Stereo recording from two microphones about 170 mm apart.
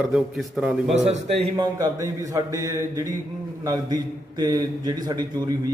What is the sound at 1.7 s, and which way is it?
A man's voice, 20° right (ahead or behind).